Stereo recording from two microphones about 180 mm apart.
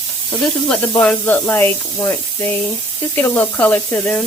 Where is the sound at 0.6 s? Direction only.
5° left (ahead or behind).